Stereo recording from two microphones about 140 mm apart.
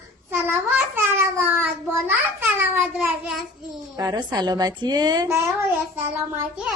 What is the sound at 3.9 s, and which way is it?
A woman's voice, 30° right (ahead or behind).